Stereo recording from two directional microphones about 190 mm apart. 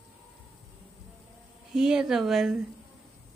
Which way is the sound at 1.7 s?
5° right (ahead or behind).